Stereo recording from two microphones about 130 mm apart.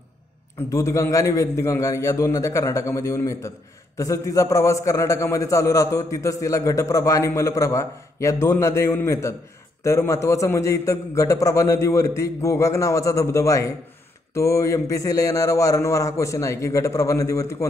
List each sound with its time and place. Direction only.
0.7 s a man's voice: 25° left (ahead or behind)